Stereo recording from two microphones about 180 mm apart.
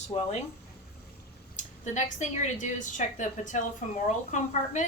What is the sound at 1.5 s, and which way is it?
A woman's voice, 45° left (ahead or behind).